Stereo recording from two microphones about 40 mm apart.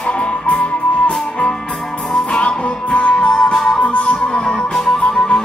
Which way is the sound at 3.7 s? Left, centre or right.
Left.